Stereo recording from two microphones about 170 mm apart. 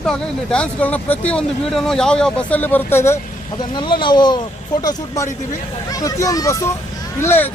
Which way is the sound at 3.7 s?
25° left (ahead or behind).